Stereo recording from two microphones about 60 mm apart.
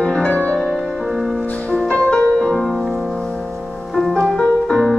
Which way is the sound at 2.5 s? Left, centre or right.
Centre.